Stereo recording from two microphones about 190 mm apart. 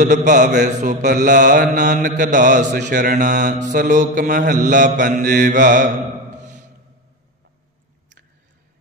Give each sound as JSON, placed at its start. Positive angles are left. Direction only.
{"t": 0.0, "sound": "a man's voice", "side_deg": -40}
{"t": 0.7, "sound": "mantra", "side_deg": -40}